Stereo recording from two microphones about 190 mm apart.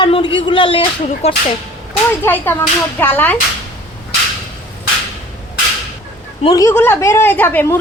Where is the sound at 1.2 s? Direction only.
30° left (ahead or behind).